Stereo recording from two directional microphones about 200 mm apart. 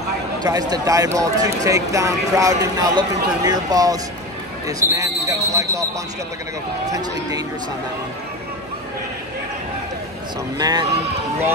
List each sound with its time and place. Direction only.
0.4 s speech: 20° right (ahead or behind)
6.9 s speech: 20° right (ahead or behind)
10.6 s speech: 20° right (ahead or behind)